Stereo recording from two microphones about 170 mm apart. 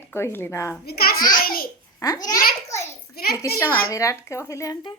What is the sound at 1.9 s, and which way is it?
Speech, 20° left (ahead or behind).